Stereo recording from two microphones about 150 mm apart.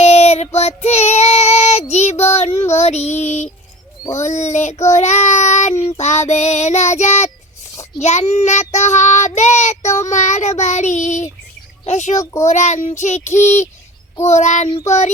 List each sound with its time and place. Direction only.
0.0 s child singing: 45° left (ahead or behind)
12.2 s a child's voice: 20° left (ahead or behind)
12.5 s child singing: 50° left (ahead or behind)